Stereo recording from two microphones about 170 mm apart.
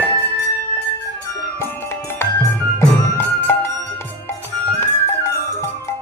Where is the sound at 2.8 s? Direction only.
10° left (ahead or behind).